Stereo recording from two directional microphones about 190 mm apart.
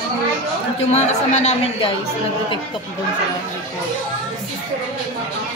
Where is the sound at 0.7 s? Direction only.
35° left (ahead or behind).